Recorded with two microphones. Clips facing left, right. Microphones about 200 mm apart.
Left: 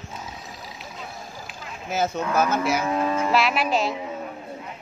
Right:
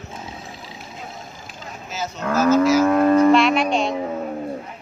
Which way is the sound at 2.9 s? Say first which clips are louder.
Right 10 dB; 55° right (ahead or behind).